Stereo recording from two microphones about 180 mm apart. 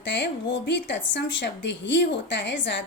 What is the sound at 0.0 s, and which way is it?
A woman's voice, 85° left.